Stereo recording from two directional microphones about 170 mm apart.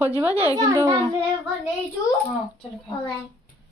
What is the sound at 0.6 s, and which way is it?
Speech, 25° right (ahead or behind).